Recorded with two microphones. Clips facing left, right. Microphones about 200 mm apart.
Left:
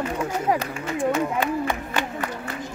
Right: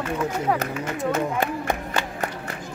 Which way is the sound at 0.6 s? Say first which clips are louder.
Left 1 dB; 45° right (ahead or behind).